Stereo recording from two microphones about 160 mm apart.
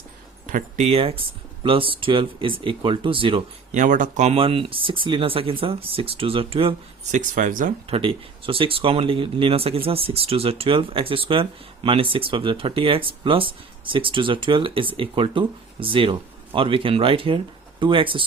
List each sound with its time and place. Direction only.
0.4 s speech: 55° right (ahead or behind)
0.9 s speech: 35° right (ahead or behind)
3.7 s speech: 50° right (ahead or behind); by 7.2 s 35° right (ahead or behind)
7.2 s speech: 55° right (ahead or behind)
7.9 s speech: 35° right (ahead or behind)